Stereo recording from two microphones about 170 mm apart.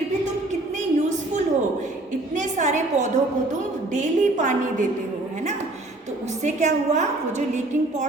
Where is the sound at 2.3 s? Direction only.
45° right (ahead or behind).